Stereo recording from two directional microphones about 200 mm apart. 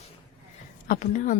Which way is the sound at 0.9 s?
40° left (ahead or behind).